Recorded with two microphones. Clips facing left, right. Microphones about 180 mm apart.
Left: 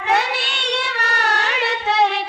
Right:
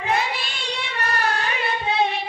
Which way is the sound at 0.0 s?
75° left (ahead or behind).